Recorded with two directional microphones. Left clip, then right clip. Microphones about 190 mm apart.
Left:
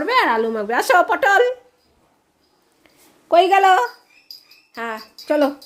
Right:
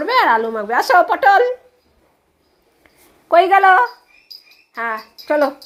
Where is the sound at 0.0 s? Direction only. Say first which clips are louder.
Right 3 dB; 15° left (ahead or behind).